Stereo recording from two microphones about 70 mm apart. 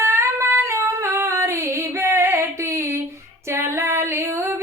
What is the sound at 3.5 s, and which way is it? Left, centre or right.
Female singing, right.